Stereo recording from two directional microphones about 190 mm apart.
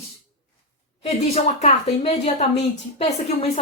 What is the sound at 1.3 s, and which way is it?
Speech, 35° left (ahead or behind).